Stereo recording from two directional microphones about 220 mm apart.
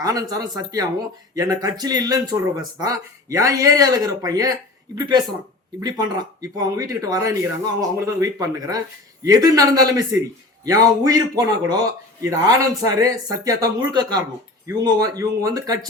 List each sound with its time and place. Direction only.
0.0 s a man's voice: 15° right (ahead or behind)